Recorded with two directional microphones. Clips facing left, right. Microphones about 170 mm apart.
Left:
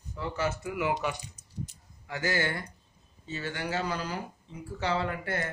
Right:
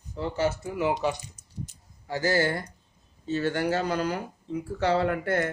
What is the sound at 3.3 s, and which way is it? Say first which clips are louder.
Speech: right 8 dB; 50° right (ahead or behind).